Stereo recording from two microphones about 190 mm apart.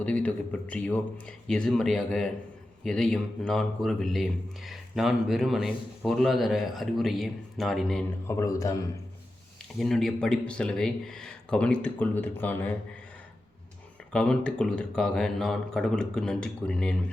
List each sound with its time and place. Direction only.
0.0 s a man's voice: 5° left (ahead or behind)
8.3 s a man's voice: 15° left (ahead or behind)
9.7 s speech: centre (ahead or behind)
14.1 s speech: 5° left (ahead or behind)